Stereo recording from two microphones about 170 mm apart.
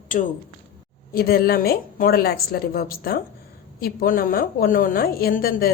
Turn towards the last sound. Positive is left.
turn(degrees=60)  # may be behind; listen again after turning